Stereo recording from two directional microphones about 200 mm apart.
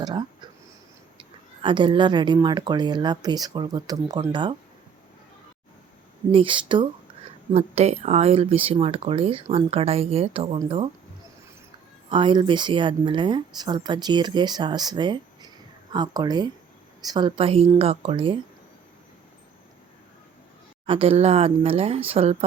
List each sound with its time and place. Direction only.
0.0 s a sound: 20° right (ahead or behind)
1.2 s a woman's voice: 25° right (ahead or behind)
6.3 s a woman's voice: 25° right (ahead or behind)
12.0 s a woman's voice: 25° right (ahead or behind)
20.8 s a woman's voice: 25° right (ahead or behind)